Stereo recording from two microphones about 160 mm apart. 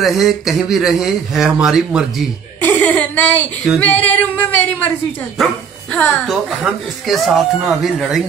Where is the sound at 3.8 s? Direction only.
10° left (ahead or behind).